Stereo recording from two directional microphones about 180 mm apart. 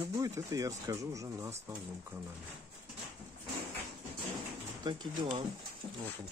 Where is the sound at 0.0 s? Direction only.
20° right (ahead or behind).